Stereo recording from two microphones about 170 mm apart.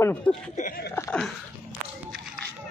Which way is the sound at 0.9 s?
15° left (ahead or behind).